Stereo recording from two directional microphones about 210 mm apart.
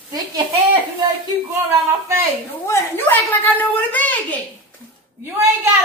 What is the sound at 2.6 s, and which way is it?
A woman's voice, 10° left (ahead or behind).